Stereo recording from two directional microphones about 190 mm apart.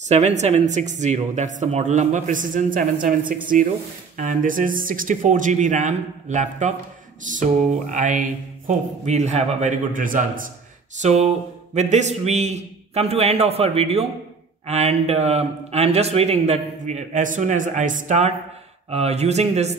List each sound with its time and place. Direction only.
0.0 s a man's voice: 35° right (ahead or behind)
7.3 s music: 40° right (ahead or behind)
7.9 s a man's voice: 40° right (ahead or behind)
11.0 s a man's voice: 35° right (ahead or behind)